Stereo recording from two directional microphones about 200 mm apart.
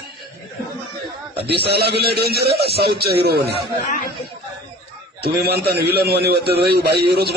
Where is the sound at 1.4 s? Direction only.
55° right (ahead or behind).